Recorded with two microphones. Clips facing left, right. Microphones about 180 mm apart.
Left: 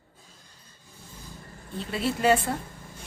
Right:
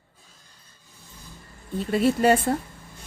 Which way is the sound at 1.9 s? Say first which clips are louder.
Right 4 dB; 45° right (ahead or behind).